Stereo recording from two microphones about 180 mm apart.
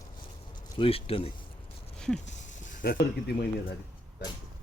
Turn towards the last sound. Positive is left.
turn(degrees=60)  # may be behind; listen again after turning